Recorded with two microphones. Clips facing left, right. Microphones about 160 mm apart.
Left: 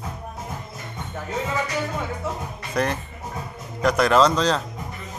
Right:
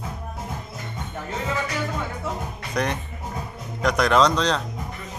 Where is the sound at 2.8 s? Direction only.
5° left (ahead or behind).